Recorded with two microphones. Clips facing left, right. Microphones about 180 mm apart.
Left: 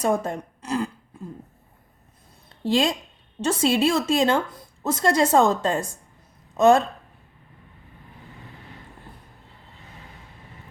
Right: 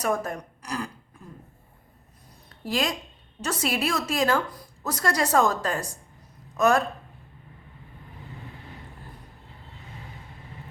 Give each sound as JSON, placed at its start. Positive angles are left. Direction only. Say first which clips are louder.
{"t": 0.0, "sound": "speech", "louder": "left 4 dB", "side_deg": 25}
{"t": 2.5, "sound": "a sound", "louder": "left 6 dB", "side_deg": 25}
{"t": 3.4, "sound": "a woman's voice", "louder": "left 7 dB", "side_deg": 25}